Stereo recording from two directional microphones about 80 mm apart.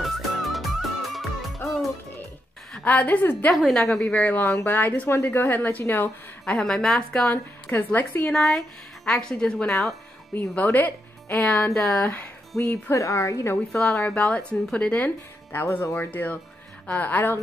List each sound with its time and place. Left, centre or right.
0.0 s music: centre
2.8 s speech: left
3.7 s speech: centre
6.6 s speech: centre; by 8.3 s left
8.3 s speech: centre
12.9 s a woman's voice: left
13.7 s speech: centre